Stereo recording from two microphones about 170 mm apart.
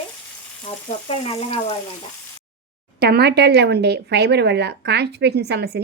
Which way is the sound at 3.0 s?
70° right (ahead or behind).